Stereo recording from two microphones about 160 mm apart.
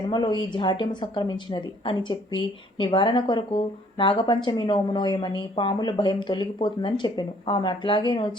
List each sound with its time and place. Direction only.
0.1 s a woman's voice: 30° left (ahead or behind)